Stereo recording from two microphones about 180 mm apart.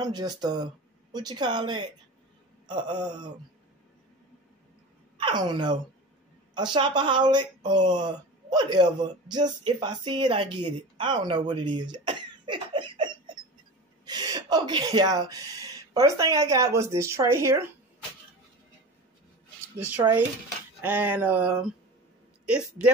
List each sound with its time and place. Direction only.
0.0 s speech: 20° right (ahead or behind)
5.1 s speech: 25° right (ahead or behind)
19.8 s speech: 10° right (ahead or behind)